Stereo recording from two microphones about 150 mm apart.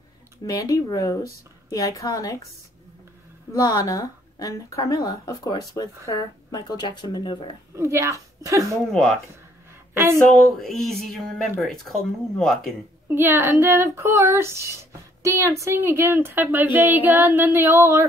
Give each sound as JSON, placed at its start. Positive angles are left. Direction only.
{"t": 0.4, "sound": "speech", "side_deg": 25}
{"t": 3.5, "sound": "speech", "side_deg": 25}
{"t": 7.7, "sound": "a woman's voice", "side_deg": -20}
{"t": 8.9, "sound": "speech", "side_deg": 0}
{"t": 9.9, "sound": "speech", "side_deg": -15}
{"t": 10.3, "sound": "speech", "side_deg": 0}
{"t": 13.1, "sound": "speech", "side_deg": -15}